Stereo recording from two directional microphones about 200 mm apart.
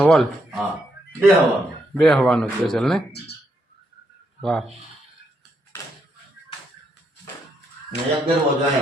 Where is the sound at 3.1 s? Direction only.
55° left (ahead or behind).